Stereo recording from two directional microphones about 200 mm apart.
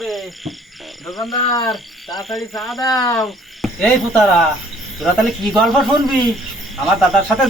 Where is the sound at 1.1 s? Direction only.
20° left (ahead or behind).